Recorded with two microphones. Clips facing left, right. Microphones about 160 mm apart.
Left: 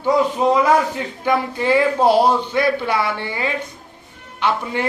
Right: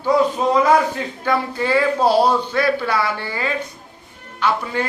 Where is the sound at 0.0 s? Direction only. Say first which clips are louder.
Even; 15° left (ahead or behind).